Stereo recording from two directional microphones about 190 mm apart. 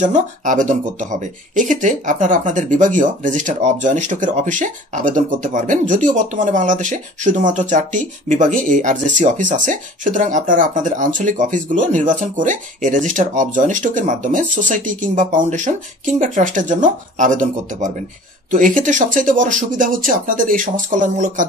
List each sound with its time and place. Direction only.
0.0 s speech: 40° right (ahead or behind)